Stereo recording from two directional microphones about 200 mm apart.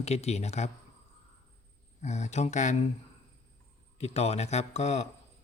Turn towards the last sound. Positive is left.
turn(degrees=35)  # may be behind; listen again after turning